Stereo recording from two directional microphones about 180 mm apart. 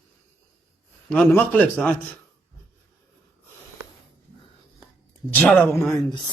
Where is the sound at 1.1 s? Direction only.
10° left (ahead or behind).